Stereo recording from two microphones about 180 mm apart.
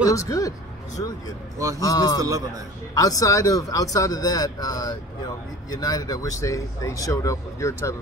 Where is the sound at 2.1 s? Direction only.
20° right (ahead or behind).